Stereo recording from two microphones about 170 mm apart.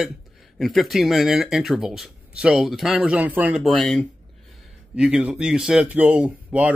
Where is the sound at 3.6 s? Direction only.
5° left (ahead or behind).